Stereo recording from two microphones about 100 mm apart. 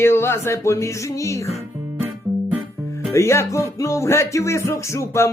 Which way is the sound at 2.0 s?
25° right (ahead or behind).